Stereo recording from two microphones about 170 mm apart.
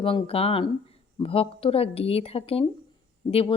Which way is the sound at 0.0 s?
30° left (ahead or behind).